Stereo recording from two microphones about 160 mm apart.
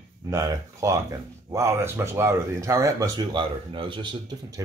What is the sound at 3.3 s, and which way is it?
Speech, 30° right (ahead or behind).